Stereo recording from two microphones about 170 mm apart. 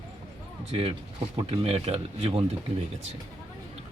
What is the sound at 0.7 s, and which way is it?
Speech, 35° right (ahead or behind).